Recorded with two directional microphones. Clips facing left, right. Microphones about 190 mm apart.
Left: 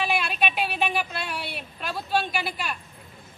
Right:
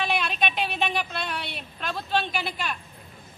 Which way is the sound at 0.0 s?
10° left (ahead or behind).